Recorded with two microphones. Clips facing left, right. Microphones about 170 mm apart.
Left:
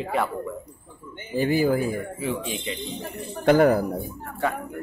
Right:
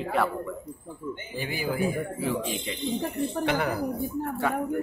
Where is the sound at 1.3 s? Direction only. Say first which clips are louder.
Left 12 dB; 45° left (ahead or behind).